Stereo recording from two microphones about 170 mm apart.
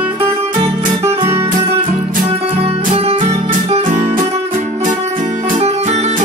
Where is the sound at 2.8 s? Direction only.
40° right (ahead or behind).